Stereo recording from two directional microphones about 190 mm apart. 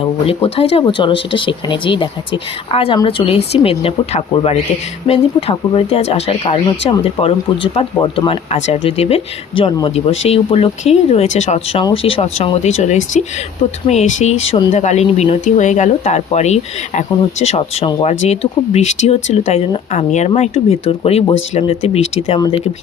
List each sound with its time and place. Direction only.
0.3 s speech: 30° left (ahead or behind)